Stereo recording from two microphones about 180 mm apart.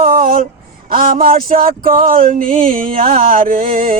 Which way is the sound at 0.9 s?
55° right (ahead or behind).